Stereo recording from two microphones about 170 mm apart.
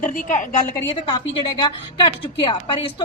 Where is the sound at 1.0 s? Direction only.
30° left (ahead or behind).